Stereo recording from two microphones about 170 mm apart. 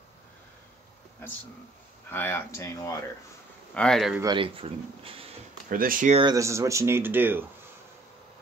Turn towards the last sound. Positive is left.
turn(degrees=-10)  # may be behind; listen again after turning